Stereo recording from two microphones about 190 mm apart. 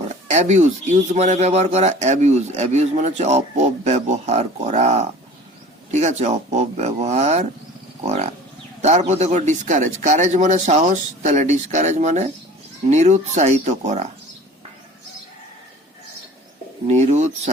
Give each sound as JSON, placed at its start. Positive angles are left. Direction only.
{"t": 0.3, "sound": "a man's voice", "side_deg": -40}
{"t": 16.8, "sound": "a man's voice", "side_deg": -40}